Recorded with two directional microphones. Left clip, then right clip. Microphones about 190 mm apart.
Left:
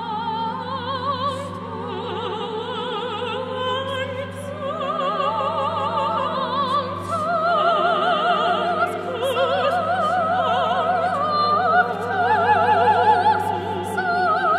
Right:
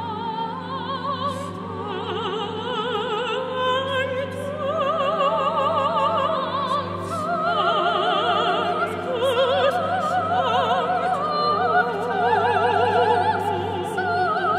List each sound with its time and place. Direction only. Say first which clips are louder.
4.8 s opera: even; 30° right (ahead or behind)
7.6 s opera: left 2 dB; 35° left (ahead or behind)
10.3 s opera: even; 30° right (ahead or behind)
11.2 s opera: left 2 dB; 35° left (ahead or behind)
12.5 s a sound: left 2 dB; 10° left (ahead or behind)
13.9 s music: left 3 dB; 35° left (ahead or behind)